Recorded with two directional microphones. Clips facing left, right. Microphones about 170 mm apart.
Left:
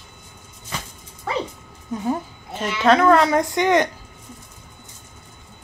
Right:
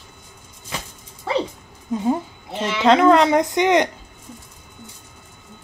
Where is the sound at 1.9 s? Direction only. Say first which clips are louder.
Right 3 dB; 20° right (ahead or behind).